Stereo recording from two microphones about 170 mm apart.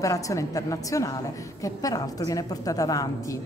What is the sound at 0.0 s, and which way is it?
A woman's voice, 20° left (ahead or behind).